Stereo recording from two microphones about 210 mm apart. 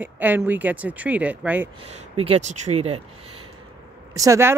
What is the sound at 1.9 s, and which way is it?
Speech, 30° right (ahead or behind).